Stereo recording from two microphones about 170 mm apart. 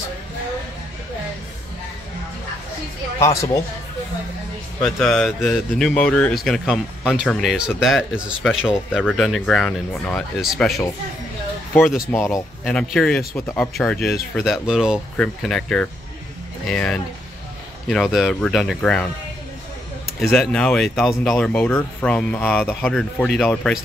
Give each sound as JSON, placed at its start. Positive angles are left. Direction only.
{"t": 3.2, "sound": "speech", "side_deg": 15}
{"t": 4.8, "sound": "speech", "side_deg": 5}
{"t": 11.8, "sound": "speech", "side_deg": -5}
{"t": 12.1, "sound": "speech", "side_deg": 15}
{"t": 20.2, "sound": "speech", "side_deg": 0}